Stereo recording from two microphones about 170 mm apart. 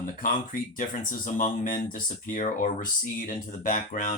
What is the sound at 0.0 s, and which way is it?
Speech, 55° left (ahead or behind).